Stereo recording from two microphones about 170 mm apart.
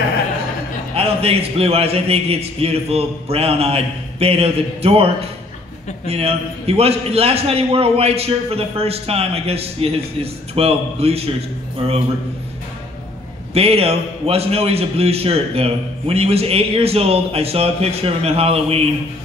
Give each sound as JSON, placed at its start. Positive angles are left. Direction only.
{"t": 0.9, "sound": "a man's voice", "side_deg": -35}
{"t": 13.5, "sound": "a man's voice", "side_deg": -35}